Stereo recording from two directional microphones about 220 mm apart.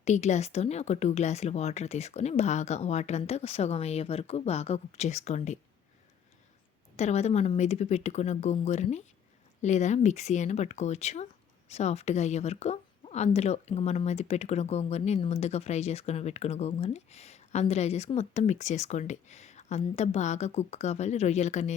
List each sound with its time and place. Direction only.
0.0 s speech: 30° left (ahead or behind)
6.9 s speech: 30° left (ahead or behind)